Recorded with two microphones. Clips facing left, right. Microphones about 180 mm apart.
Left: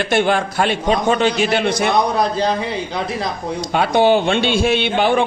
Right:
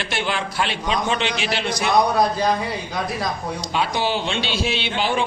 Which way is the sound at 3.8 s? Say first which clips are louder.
Left 9 dB; 55° left (ahead or behind).